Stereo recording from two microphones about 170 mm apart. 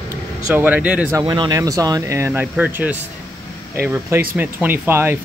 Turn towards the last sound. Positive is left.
turn(degrees=-10)  # may be behind; listen again after turning